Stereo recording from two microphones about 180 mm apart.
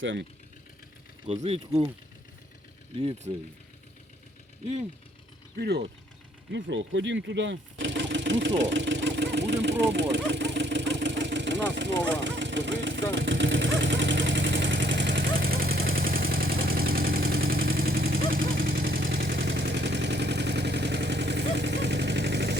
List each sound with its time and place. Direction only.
0.0 s speech: 90° right
1.3 s speech: 35° right (ahead or behind)
3.0 s speech: 30° right (ahead or behind)
5.5 s speech: 65° right (ahead or behind)
6.5 s speech: 90° right
8.6 s engine: 90° right; by 9.7 s 70° right (ahead or behind)
9.8 s vehicle: 75° right (ahead or behind)